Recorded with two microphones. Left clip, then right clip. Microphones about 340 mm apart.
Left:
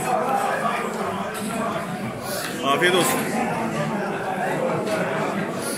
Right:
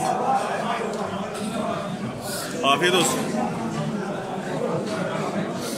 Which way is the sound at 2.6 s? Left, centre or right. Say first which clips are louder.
Even; centre.